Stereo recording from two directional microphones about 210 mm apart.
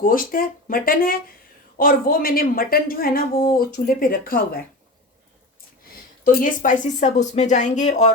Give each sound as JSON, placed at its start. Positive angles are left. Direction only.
{"t": 0.0, "sound": "speech", "side_deg": 40}
{"t": 6.2, "sound": "speech", "side_deg": 40}